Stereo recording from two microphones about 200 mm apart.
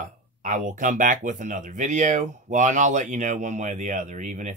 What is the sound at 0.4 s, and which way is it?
Speech, 40° right (ahead or behind).